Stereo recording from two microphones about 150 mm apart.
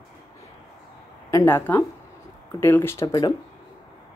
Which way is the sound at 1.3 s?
15° left (ahead or behind).